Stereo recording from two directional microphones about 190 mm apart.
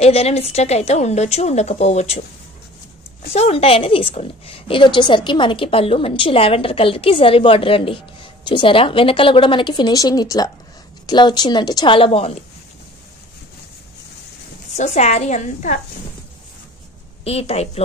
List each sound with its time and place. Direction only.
0.0 s a woman's voice: 35° left (ahead or behind)
3.3 s a woman's voice: 30° left (ahead or behind)
14.7 s a woman's voice: 35° left (ahead or behind)
17.2 s a woman's voice: 30° left (ahead or behind)